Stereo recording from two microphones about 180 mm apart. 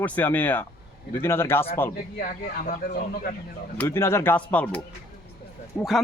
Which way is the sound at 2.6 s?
50° left (ahead or behind).